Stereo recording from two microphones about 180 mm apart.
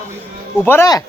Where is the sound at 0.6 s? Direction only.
15° left (ahead or behind).